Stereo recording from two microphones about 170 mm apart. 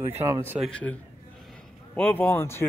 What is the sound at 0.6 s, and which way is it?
Speech, 5° left (ahead or behind).